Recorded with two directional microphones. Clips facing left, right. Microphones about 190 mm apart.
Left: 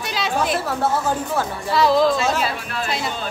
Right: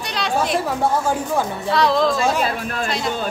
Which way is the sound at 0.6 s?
10° right (ahead or behind).